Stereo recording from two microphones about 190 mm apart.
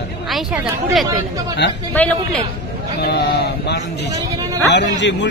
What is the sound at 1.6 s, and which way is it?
Speech, 65° left (ahead or behind).